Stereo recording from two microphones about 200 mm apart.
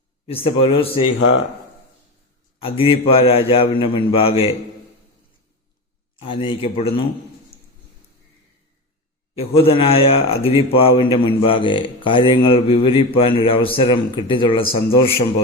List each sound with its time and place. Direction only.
0.4 s a man's voice: 30° left (ahead or behind)
2.6 s a man's voice: 30° left (ahead or behind)
6.1 s a man's voice: 25° left (ahead or behind)
9.3 s a man's voice: 30° left (ahead or behind)